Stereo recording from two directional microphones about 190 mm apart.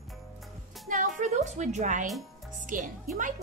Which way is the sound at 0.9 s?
40° right (ahead or behind).